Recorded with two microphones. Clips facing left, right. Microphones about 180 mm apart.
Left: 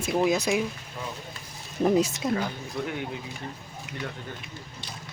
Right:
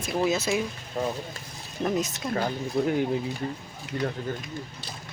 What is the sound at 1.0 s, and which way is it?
Speech, 60° right (ahead or behind).